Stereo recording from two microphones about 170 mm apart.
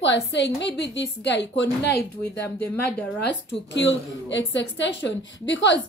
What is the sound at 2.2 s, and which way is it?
Speech, 10° left (ahead or behind).